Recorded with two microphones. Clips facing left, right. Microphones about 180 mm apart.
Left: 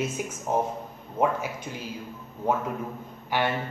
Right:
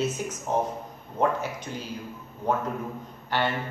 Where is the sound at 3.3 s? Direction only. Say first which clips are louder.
Even; 10° left (ahead or behind).